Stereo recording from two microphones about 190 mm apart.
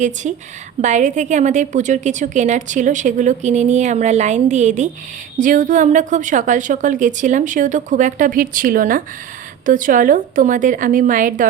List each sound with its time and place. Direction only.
0.0 s a woman's voice: 40° right (ahead or behind)